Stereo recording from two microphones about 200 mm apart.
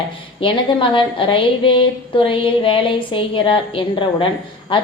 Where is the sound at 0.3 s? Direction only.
25° left (ahead or behind).